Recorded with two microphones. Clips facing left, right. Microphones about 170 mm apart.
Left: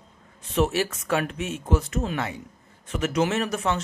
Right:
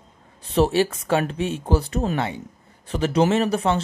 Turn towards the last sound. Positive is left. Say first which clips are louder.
# right 5 dB
turn(degrees=-30)  # may be behind; listen again after turning